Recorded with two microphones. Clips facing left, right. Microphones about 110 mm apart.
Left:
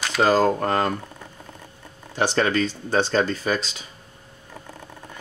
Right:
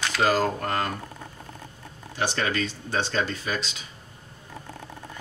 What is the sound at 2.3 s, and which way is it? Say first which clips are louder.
Speech: left 8 dB; 35° left (ahead or behind).